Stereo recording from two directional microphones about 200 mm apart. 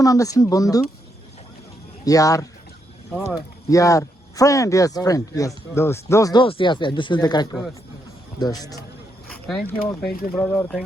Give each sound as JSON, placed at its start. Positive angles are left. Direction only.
{"t": 0.0, "sound": "speech", "side_deg": 15}
{"t": 2.0, "sound": "a man's voice", "side_deg": 15}
{"t": 9.3, "sound": "speech", "side_deg": 5}